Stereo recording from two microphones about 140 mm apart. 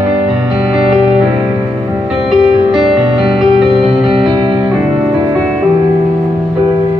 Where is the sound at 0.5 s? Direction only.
5° right (ahead or behind).